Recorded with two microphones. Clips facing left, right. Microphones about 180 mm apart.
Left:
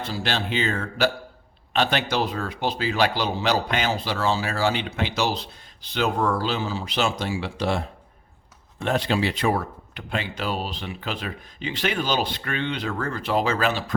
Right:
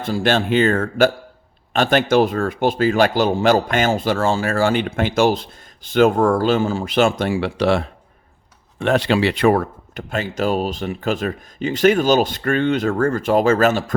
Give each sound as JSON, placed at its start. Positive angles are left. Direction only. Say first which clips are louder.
{"t": 0.0, "sound": "a man's voice", "louder": "right 9 dB", "side_deg": -50}